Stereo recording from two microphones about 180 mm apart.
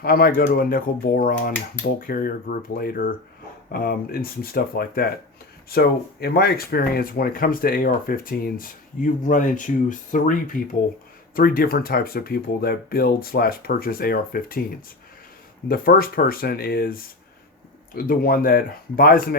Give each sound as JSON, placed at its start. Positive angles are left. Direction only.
{"t": 0.0, "sound": "speech", "side_deg": 55}
{"t": 15.7, "sound": "speech", "side_deg": 55}